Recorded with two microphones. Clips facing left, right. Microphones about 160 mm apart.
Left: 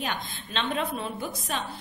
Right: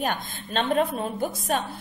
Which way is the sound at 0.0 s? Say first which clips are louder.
Right 4 dB; 45° right (ahead or behind).